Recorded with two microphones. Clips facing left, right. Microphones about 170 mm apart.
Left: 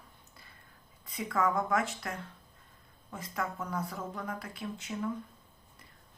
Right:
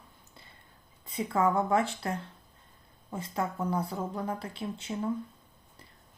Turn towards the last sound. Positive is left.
turn(degrees=-30)  # may be behind; listen again after turning